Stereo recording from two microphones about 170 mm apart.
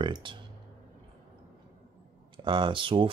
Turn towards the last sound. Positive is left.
turn(degrees=-30)  # may be behind; listen again after turning